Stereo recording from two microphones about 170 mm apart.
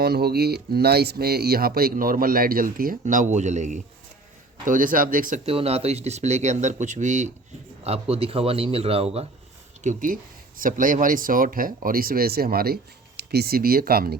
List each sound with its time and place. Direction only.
0.0 s speech: 70° right (ahead or behind); by 5.4 s 55° right (ahead or behind)
5.5 s speech: 35° right (ahead or behind)
9.8 s speech: 55° right (ahead or behind)